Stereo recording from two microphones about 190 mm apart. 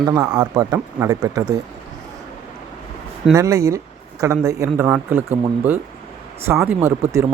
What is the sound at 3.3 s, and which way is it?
Speech, 15° right (ahead or behind).